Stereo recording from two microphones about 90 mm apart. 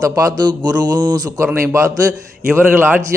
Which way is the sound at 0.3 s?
55° right (ahead or behind).